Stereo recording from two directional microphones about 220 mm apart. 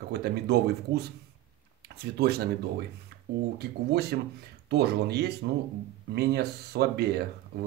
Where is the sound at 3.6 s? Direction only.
45° right (ahead or behind).